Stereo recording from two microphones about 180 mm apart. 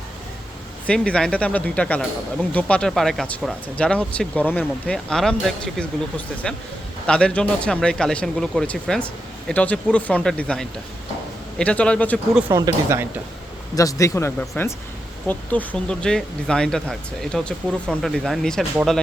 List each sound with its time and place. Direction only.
0.9 s speech: 5° left (ahead or behind)
12.3 s speech: 5° right (ahead or behind)
12.5 s speech: 15° right (ahead or behind)
13.7 s speech: 20° left (ahead or behind); by 18.6 s centre (ahead or behind)